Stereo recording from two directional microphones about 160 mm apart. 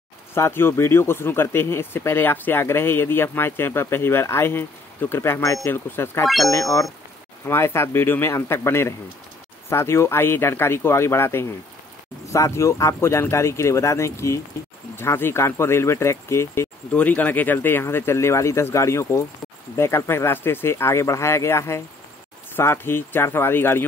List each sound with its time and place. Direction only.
0.3 s speech: 15° left (ahead or behind)
6.2 s speech: centre (ahead or behind)
6.5 s speech: 20° left (ahead or behind)